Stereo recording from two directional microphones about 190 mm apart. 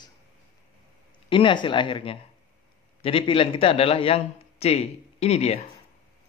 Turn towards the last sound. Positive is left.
turn(degrees=35)  # may be behind; listen again after turning